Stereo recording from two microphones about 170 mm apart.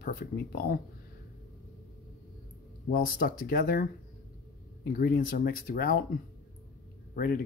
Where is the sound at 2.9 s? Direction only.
55° left (ahead or behind).